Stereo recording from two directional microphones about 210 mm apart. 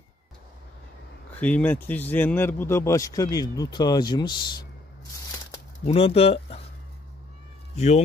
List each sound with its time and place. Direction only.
1.4 s speech: 5° left (ahead or behind)
5.9 s speech: 30° left (ahead or behind)
7.7 s speech: 30° left (ahead or behind)